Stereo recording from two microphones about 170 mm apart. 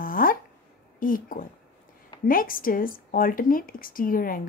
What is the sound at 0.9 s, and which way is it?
A woman's voice, 55° left (ahead or behind).